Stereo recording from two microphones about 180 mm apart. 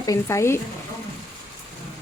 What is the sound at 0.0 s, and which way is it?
Speech, 15° left (ahead or behind).